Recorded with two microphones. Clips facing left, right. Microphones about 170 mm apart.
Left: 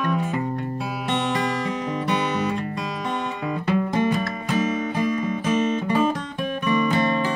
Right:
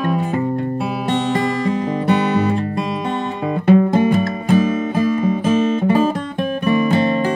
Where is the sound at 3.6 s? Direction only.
50° right (ahead or behind).